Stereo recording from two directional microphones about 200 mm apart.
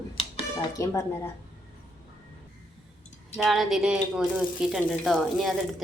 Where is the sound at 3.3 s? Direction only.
Centre (ahead or behind).